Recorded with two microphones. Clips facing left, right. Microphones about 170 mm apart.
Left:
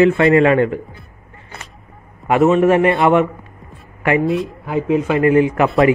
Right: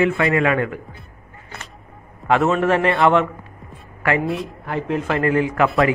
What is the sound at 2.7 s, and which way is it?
Speech, 20° left (ahead or behind).